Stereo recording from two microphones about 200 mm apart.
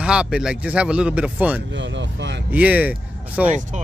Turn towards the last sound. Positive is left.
turn(degrees=-10)  # may be behind; listen again after turning